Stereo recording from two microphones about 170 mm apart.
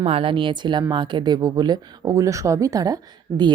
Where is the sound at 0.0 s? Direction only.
35° right (ahead or behind).